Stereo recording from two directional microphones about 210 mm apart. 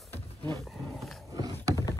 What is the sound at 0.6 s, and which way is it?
Wild animals, centre (ahead or behind).